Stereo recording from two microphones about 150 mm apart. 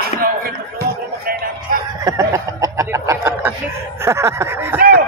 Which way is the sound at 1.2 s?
80° right.